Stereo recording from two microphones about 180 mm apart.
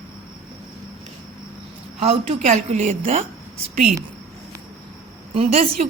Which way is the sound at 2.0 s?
35° right (ahead or behind).